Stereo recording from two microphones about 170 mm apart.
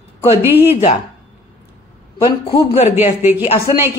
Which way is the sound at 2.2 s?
35° left (ahead or behind).